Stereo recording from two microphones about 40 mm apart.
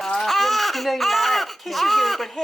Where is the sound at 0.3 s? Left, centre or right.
Centre.